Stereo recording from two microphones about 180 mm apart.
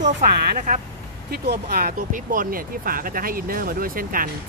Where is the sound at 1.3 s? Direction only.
60° right (ahead or behind).